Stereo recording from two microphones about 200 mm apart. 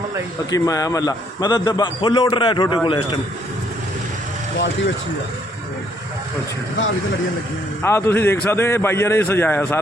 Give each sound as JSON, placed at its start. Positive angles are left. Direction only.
{"t": 0.5, "sound": "a man's voice", "side_deg": 15}
{"t": 7.8, "sound": "a man's voice", "side_deg": 10}